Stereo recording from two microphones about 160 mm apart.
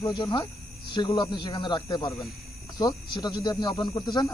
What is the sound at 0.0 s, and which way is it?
Speech, 30° left (ahead or behind).